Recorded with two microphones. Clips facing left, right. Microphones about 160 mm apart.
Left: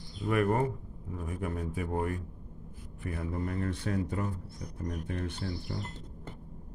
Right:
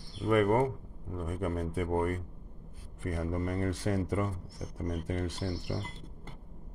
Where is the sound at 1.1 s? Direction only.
65° right (ahead or behind).